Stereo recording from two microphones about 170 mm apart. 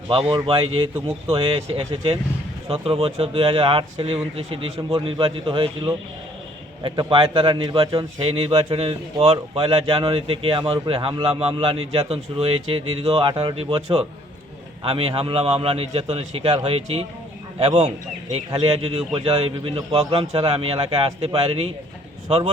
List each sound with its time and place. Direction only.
0.1 s a man's voice: 30° right (ahead or behind)